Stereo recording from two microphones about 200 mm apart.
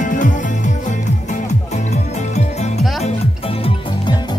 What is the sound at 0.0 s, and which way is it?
Music, 40° left (ahead or behind).